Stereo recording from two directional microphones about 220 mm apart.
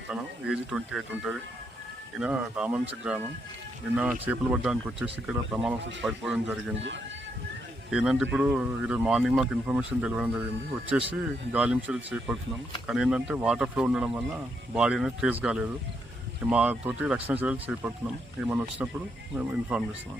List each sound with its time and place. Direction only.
0.1 s speech: 5° right (ahead or behind)
6.7 s speech: 55° right (ahead or behind)
7.9 s speech: 5° right (ahead or behind)